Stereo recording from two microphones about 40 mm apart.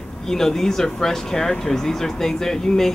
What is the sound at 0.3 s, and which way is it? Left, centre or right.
Speech, centre.